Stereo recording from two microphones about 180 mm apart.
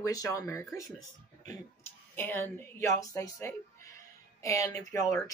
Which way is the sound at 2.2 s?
10° left (ahead or behind).